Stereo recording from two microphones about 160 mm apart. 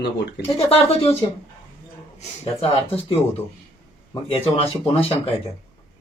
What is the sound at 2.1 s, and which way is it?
Speech, 40° left (ahead or behind).